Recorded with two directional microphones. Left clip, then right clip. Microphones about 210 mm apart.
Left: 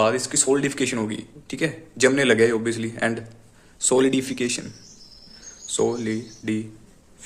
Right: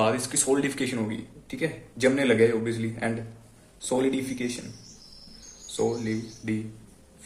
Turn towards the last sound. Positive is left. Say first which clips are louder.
# left 4 dB
turn(degrees=35)  # may be behind; listen again after turning